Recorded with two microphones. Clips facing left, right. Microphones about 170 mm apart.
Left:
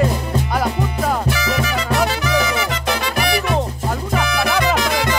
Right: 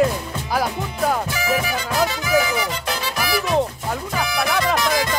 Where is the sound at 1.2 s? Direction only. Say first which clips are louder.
Left 2 dB; 80° left.